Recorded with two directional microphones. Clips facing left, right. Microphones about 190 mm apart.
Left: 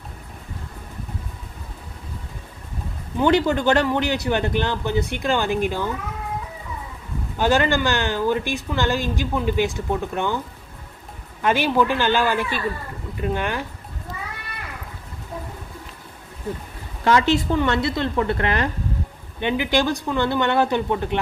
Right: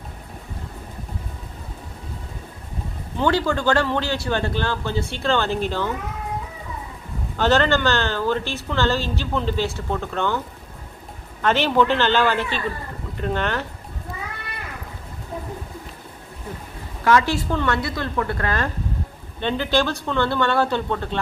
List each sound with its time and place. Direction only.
3.3 s speech: 20° left (ahead or behind)
7.3 s speech: 10° left (ahead or behind)
11.4 s speech: 10° left (ahead or behind)
17.0 s a woman's voice: 20° left (ahead or behind)